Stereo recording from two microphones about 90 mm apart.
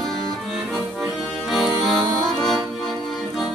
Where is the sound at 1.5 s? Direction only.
Centre (ahead or behind).